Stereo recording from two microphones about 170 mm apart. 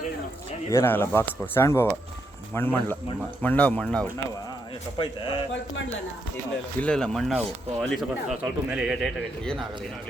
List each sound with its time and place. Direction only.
0.7 s speech: 15° left (ahead or behind)
4.9 s a man's voice: 30° left (ahead or behind)
6.7 s speech: 5° left (ahead or behind)